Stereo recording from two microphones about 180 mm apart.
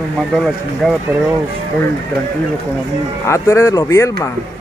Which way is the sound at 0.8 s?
5° left (ahead or behind).